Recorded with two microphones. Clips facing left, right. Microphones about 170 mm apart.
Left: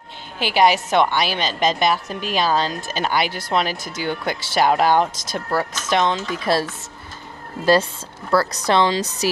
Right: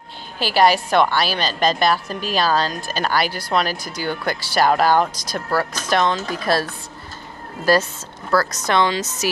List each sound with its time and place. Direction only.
0.4 s a woman's voice: 20° left (ahead or behind)
8.3 s a woman's voice: 30° left (ahead or behind)